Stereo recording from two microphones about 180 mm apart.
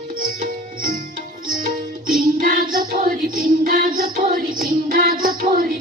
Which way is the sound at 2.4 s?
50° right (ahead or behind).